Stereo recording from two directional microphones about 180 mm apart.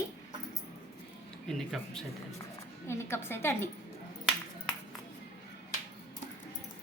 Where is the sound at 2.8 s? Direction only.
15° left (ahead or behind).